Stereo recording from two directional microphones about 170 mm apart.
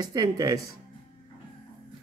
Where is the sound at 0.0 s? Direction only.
20° right (ahead or behind).